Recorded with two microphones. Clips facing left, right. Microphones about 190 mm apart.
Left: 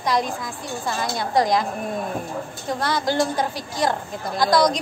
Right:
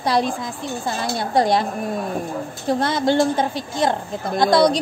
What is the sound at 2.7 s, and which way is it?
A woman's voice, 25° right (ahead or behind).